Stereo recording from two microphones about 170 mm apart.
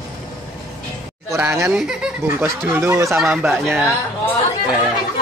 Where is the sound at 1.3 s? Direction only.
15° right (ahead or behind).